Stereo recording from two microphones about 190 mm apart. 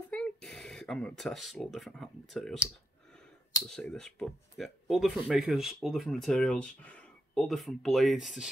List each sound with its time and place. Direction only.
0.1 s speech: 5° left (ahead or behind)
2.6 s clicking: 5° left (ahead or behind)
3.6 s speech: 5° left (ahead or behind)